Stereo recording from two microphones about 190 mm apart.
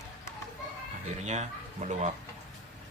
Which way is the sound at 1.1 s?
40° right (ahead or behind).